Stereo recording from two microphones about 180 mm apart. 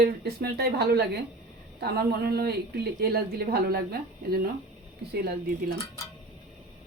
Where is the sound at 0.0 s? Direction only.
65° right (ahead or behind).